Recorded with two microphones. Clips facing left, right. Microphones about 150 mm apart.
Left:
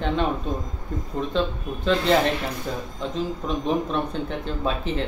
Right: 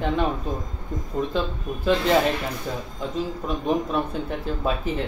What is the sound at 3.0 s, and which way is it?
Speech, 5° right (ahead or behind).